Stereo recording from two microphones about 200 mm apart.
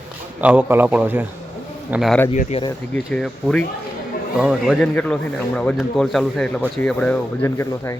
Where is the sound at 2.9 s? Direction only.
5° left (ahead or behind).